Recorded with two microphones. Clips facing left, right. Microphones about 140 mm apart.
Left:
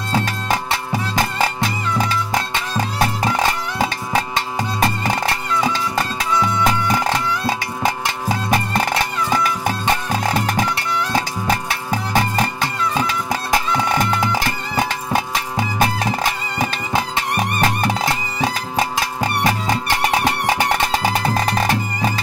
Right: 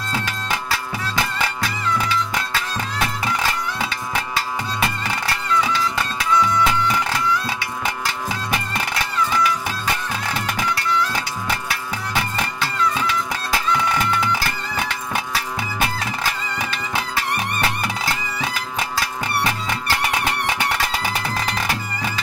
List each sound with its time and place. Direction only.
0.1 s music: 40° left (ahead or behind)